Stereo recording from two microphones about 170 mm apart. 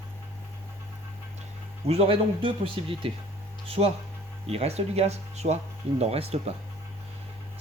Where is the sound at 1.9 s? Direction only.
35° right (ahead or behind).